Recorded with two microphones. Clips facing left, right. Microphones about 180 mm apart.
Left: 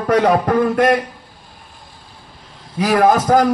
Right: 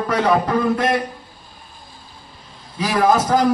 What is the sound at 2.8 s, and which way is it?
Speech, 50° left (ahead or behind).